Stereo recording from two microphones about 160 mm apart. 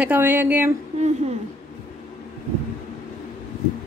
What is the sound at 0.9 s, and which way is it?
Speech, 45° right (ahead or behind).